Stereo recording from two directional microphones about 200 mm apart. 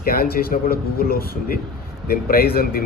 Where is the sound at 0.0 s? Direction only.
50° left (ahead or behind).